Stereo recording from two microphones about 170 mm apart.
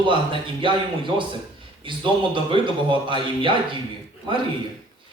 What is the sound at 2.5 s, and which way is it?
A man's voice, 30° right (ahead or behind).